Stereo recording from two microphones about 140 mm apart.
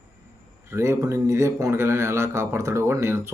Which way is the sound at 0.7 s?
20° right (ahead or behind).